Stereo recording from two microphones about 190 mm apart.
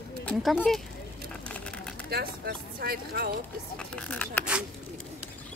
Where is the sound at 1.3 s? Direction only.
5° left (ahead or behind).